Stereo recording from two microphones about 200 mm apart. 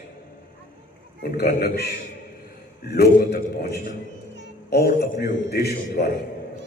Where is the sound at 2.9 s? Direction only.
50° left (ahead or behind).